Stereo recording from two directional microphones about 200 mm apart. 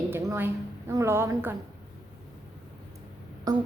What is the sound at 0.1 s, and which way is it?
A woman's voice, 10° right (ahead or behind).